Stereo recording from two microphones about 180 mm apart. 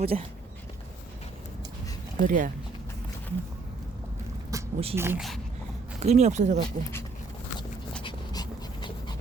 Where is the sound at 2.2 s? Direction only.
50° right (ahead or behind).